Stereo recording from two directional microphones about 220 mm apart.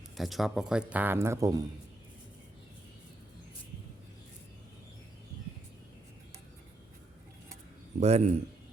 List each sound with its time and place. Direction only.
0.2 s speech: centre (ahead or behind)
8.0 s a man's voice: 30° right (ahead or behind)